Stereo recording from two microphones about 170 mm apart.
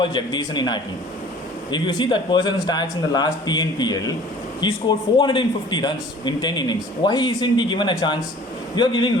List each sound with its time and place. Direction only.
0.0 s a man's voice: 25° left (ahead or behind)